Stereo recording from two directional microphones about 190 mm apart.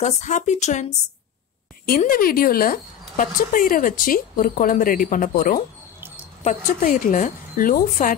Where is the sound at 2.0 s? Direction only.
50° left (ahead or behind).